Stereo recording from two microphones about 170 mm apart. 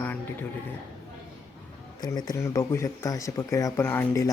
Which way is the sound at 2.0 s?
25° left (ahead or behind).